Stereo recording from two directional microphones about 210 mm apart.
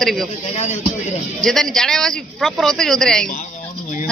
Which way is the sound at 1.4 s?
Centre (ahead or behind).